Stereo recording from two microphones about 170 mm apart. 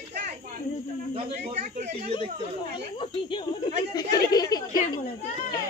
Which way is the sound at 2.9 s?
30° left (ahead or behind).